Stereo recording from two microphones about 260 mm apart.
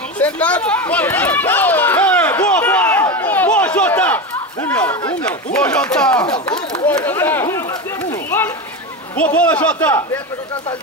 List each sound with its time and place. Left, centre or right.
0.2 s run: centre
4.6 s a man's voice: centre
6.2 s speech: centre
9.1 s a man's voice: centre